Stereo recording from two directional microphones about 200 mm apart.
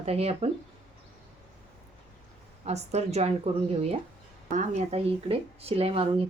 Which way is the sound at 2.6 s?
35° right (ahead or behind).